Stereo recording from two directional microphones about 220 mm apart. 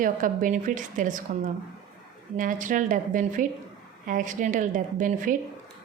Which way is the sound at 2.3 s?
35° right (ahead or behind).